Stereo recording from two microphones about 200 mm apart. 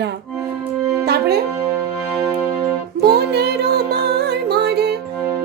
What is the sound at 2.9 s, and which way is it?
Music, 55° right (ahead or behind).